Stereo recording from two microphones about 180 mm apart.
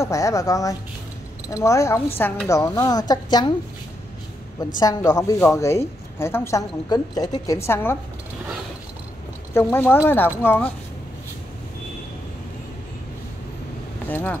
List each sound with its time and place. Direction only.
0.0 s a woman's voice: 15° left (ahead or behind)
4.7 s a woman's voice: 20° left (ahead or behind)
9.5 s a woman's voice: 15° left (ahead or behind)
14.0 s speech: 10° left (ahead or behind)